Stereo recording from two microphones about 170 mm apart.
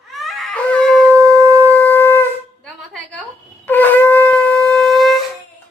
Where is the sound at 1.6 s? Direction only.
10° left (ahead or behind).